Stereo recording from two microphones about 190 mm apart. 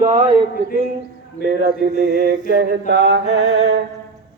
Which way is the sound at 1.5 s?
55° right (ahead or behind).